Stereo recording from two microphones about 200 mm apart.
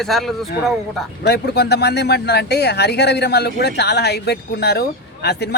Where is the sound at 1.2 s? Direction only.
55° left (ahead or behind).